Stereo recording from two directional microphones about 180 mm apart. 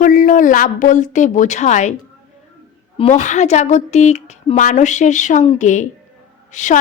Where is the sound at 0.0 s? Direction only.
45° left (ahead or behind).